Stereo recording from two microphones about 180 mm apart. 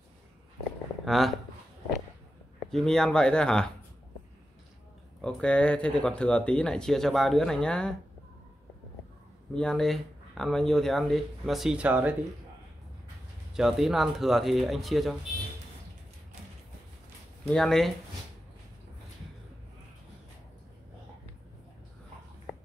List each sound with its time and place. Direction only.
1.0 s speech: centre (ahead or behind)
2.7 s speech: centre (ahead or behind)
5.2 s speech: 5° left (ahead or behind)
9.5 s speech: 5° left (ahead or behind)
13.6 s speech: centre (ahead or behind)
17.5 s speech: 5° left (ahead or behind)